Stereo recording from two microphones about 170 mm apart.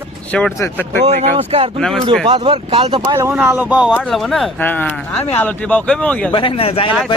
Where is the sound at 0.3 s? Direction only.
5° left (ahead or behind).